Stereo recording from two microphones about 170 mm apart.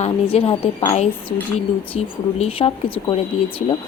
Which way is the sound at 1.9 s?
35° left (ahead or behind).